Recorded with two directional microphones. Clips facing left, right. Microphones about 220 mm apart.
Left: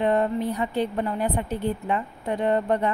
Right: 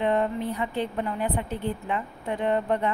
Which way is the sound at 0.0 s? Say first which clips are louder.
Left 2 dB; 40° left (ahead or behind).